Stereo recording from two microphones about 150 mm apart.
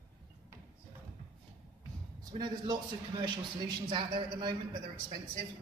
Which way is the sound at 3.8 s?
30° right (ahead or behind).